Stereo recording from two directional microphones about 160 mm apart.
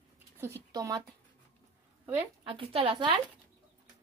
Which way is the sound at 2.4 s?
35° right (ahead or behind).